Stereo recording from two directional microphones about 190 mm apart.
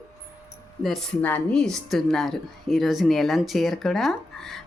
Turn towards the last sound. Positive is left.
turn(degrees=0)  # may be behind; listen again after turning